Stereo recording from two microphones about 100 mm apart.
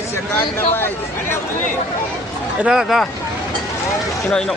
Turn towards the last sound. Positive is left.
turn(degrees=-5)  # may be behind; listen again after turning